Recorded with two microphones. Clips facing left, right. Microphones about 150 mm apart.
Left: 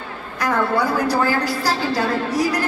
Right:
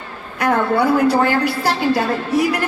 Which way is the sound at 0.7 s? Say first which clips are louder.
Right 4 dB; 25° right (ahead or behind).